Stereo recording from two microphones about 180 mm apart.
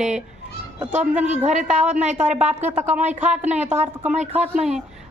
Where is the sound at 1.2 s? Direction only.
40° right (ahead or behind).